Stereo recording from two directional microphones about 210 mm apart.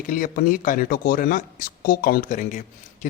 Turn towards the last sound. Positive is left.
turn(degrees=40)  # may be behind; listen again after turning